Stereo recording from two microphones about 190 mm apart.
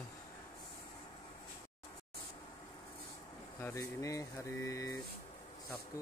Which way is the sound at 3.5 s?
15° left (ahead or behind).